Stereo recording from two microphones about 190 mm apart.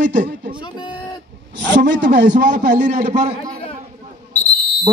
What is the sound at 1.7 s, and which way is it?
Speech, 70° right (ahead or behind).